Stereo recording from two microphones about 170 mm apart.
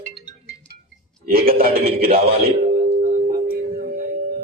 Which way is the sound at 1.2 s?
60° right (ahead or behind).